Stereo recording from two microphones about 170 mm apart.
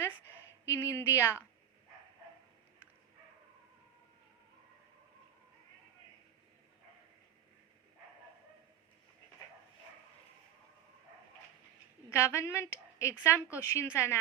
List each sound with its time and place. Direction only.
0.7 s a woman's voice: 15° left (ahead or behind)
12.1 s a woman's voice: 15° left (ahead or behind)